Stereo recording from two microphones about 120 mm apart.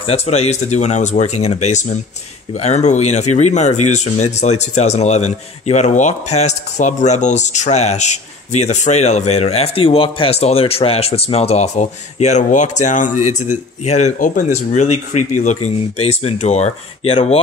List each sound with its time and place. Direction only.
0.0 s speech: 60° left (ahead or behind)